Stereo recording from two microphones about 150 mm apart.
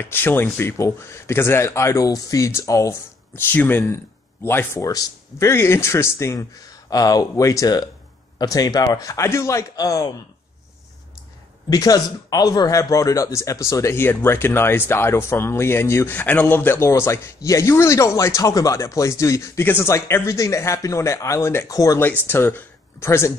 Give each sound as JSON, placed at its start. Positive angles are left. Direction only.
{"t": 0.0, "sound": "speech", "side_deg": 15}
{"t": 11.7, "sound": "speech", "side_deg": 25}